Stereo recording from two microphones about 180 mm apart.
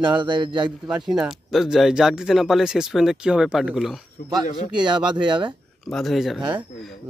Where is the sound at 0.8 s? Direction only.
5° right (ahead or behind).